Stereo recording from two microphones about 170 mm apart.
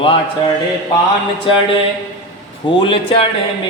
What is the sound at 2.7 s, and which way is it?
Speech, 30° left (ahead or behind).